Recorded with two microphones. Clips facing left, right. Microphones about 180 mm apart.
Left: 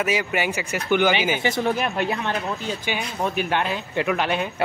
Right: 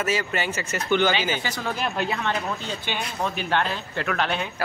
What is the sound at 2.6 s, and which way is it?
Speech, 10° left (ahead or behind).